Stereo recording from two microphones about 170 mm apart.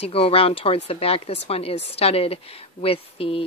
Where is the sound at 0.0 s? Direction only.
35° left (ahead or behind).